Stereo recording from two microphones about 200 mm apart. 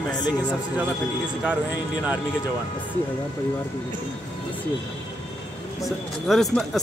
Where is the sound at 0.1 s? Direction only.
20° left (ahead or behind).